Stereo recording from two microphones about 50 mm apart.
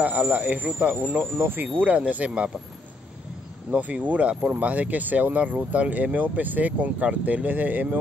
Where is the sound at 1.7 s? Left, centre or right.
Right.